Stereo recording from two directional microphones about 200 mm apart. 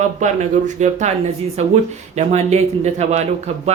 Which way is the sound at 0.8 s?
35° right (ahead or behind).